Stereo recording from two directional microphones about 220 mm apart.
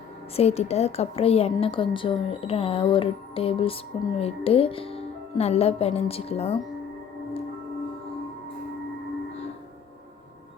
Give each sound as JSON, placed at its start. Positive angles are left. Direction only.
{"t": 0.3, "sound": "a woman's voice", "side_deg": 30}